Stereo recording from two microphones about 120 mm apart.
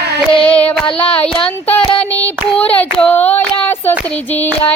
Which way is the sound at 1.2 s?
45° left (ahead or behind).